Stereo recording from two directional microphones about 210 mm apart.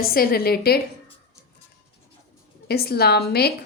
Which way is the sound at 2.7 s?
50° left (ahead or behind).